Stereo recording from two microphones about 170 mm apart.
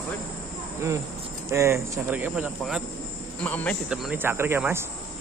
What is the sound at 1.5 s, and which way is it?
Speech, 15° right (ahead or behind).